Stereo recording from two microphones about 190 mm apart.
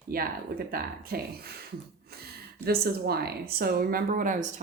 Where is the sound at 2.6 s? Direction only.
55° right (ahead or behind).